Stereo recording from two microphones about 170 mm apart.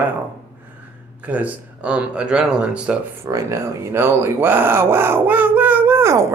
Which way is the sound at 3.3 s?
20° right (ahead or behind).